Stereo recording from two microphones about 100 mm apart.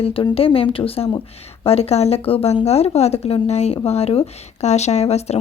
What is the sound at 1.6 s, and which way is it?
Speech, 90° left.